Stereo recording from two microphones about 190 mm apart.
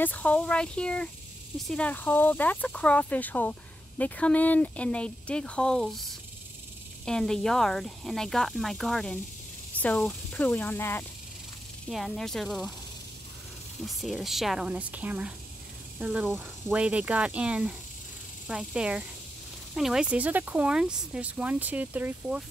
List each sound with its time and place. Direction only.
0.0 s speech: 10° left (ahead or behind)
7.1 s speech: 5° left (ahead or behind)
13.8 s speech: centre (ahead or behind)